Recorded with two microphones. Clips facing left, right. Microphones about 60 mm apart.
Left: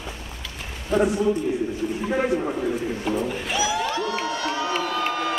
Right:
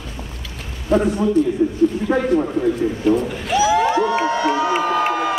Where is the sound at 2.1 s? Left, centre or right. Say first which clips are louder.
Right 5 dB; right.